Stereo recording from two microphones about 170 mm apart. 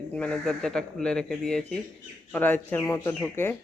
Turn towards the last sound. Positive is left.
turn(degrees=10)  # may be behind; listen again after turning